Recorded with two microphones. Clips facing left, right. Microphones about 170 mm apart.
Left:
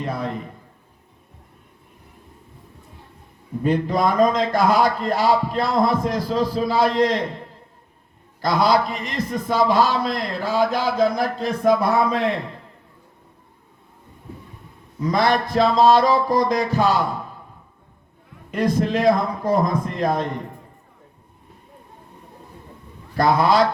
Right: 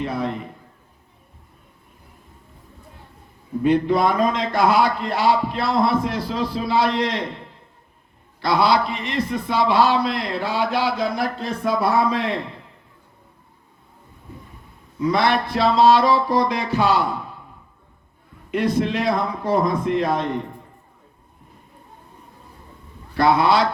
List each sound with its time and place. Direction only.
0.0 s a man's voice: 40° left (ahead or behind)
3.6 s a man's voice: 40° left (ahead or behind)
15.0 s a man's voice: 40° left (ahead or behind)
18.5 s a man's voice: 40° left (ahead or behind)
23.1 s a man's voice: 40° left (ahead or behind)